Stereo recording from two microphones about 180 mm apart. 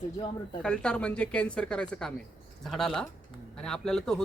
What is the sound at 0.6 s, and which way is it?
A man's voice, 5° left (ahead or behind).